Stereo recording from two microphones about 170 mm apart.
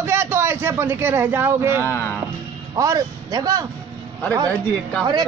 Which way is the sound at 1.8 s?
15° left (ahead or behind).